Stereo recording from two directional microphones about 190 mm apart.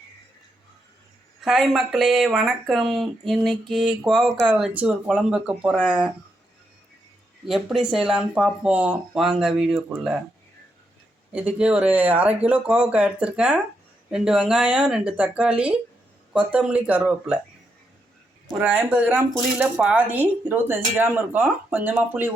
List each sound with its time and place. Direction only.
1.4 s speech: centre (ahead or behind)
7.4 s speech: centre (ahead or behind)
11.3 s speech: 5° right (ahead or behind)
18.5 s speech: 10° right (ahead or behind)